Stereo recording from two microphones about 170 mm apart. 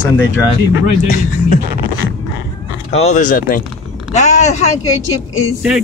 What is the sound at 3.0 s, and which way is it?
Speech, 45° left (ahead or behind).